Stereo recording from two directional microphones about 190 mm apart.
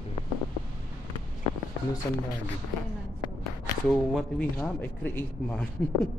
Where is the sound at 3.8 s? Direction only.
5° left (ahead or behind).